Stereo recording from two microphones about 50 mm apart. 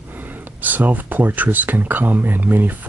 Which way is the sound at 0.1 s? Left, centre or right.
Right.